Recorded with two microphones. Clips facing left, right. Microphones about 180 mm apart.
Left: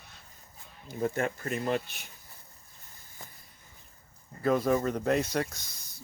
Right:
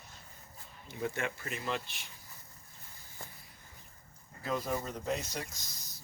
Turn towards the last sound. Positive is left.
turn(degrees=60)  # may be behind; listen again after turning